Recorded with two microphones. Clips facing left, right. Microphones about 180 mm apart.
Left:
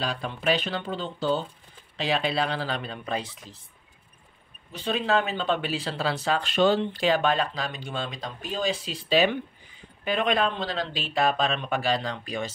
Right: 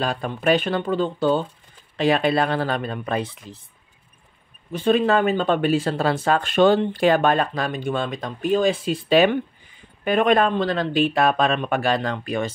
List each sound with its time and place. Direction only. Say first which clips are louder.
0.0 s speech: right 6 dB; 50° right (ahead or behind)
4.7 s speech: right 7 dB; 50° right (ahead or behind)